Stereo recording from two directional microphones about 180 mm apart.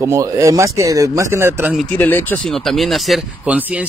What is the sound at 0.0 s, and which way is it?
Speech, 15° right (ahead or behind).